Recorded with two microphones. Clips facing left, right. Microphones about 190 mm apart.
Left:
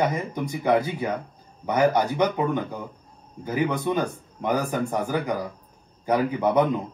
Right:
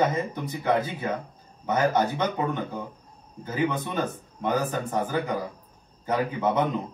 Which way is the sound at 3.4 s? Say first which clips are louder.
Left 2 dB; 15° left (ahead or behind).